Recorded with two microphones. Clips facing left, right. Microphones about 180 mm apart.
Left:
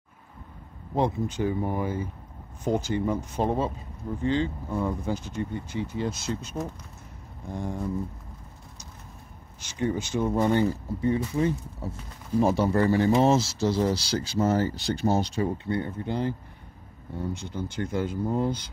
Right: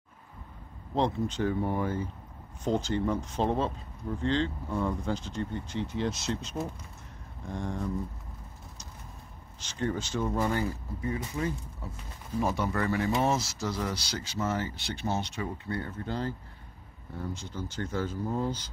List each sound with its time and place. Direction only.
0.9 s speech: 10° left (ahead or behind)
9.6 s speech: 10° left (ahead or behind)
10.2 s speech: 25° left (ahead or behind)
17.7 s speech: 15° left (ahead or behind)